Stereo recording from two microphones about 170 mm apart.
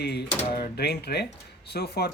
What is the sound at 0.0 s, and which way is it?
Speech, 80° left.